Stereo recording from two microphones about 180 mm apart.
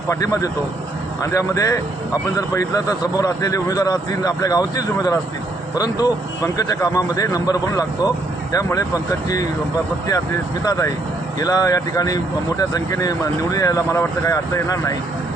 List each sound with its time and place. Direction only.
0.1 s speech: 20° left (ahead or behind)
10.7 s speech: 15° left (ahead or behind)